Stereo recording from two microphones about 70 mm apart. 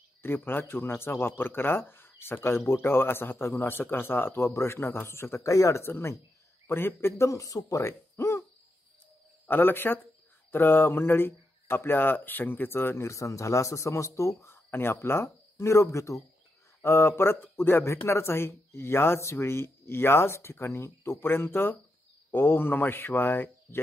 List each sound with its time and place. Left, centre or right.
0.2 s speech: left
9.5 s speech: left
16.8 s speech: left